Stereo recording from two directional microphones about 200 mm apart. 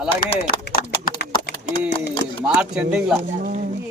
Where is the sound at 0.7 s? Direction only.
45° left (ahead or behind).